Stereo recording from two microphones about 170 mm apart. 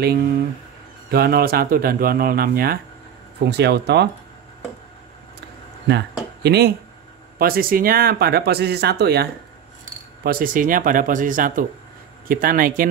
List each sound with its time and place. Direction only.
1.1 s speech: 65° right (ahead or behind)
3.4 s speech: 80° right
5.9 s speech: 80° right
7.3 s speech: 60° right (ahead or behind)
10.2 s speech: 55° right (ahead or behind)